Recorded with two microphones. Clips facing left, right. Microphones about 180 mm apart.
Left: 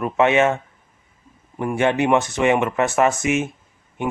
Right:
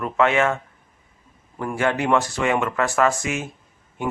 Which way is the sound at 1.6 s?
20° left (ahead or behind).